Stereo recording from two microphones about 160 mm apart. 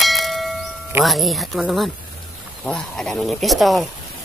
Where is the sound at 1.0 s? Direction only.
Centre (ahead or behind).